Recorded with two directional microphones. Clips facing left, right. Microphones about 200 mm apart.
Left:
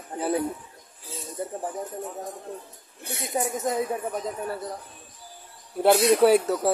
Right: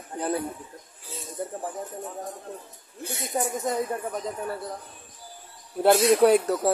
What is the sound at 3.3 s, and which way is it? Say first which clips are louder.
Speech: left 1 dB; 5° left (ahead or behind).